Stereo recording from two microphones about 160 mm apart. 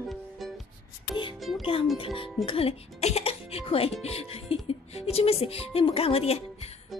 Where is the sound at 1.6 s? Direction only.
35° left (ahead or behind).